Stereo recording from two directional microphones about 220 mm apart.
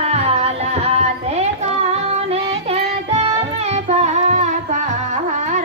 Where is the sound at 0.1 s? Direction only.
30° right (ahead or behind).